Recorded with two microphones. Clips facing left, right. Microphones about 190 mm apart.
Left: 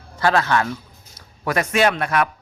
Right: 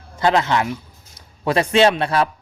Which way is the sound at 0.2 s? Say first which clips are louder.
Right 1 dB; 20° right (ahead or behind).